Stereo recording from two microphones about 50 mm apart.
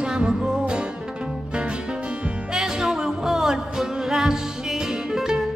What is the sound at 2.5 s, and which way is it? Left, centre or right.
Music, centre.